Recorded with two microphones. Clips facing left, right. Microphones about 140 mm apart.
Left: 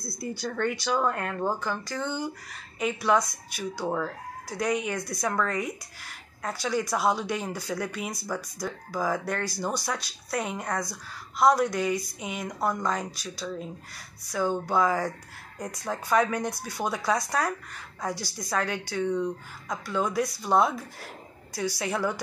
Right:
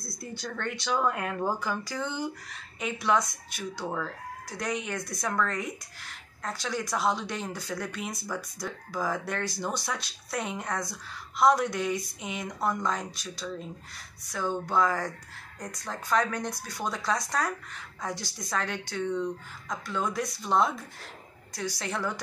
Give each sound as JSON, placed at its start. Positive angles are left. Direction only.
{"t": 0.2, "sound": "speech", "side_deg": 5}
{"t": 3.8, "sound": "speech", "side_deg": 20}
{"t": 4.5, "sound": "speech", "side_deg": 5}